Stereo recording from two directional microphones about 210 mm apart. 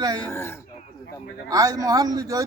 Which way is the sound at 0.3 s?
10° left (ahead or behind).